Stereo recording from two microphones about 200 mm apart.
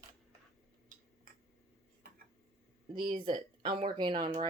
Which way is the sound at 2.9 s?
25° right (ahead or behind).